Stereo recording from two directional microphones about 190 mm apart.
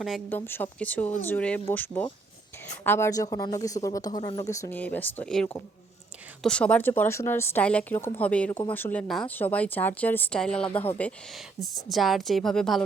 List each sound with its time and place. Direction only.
0.0 s speech: 5° left (ahead or behind)